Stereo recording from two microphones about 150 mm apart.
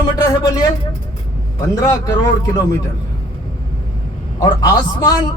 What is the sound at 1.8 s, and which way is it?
Speech, 20° left (ahead or behind).